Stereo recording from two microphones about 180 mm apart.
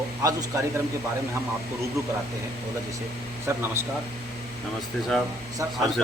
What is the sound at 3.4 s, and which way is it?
Speech, 15° right (ahead or behind).